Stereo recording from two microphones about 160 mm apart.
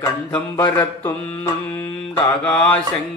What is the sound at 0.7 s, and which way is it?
Mantra, 10° left (ahead or behind).